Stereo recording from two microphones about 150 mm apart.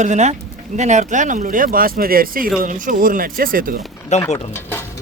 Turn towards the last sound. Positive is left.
turn(degrees=15)  # may be behind; listen again after turning